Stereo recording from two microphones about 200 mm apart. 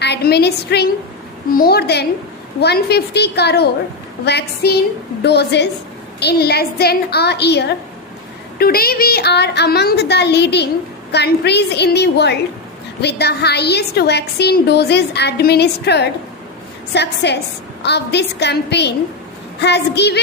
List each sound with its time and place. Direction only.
0.0 s a woman's voice: 55° left (ahead or behind)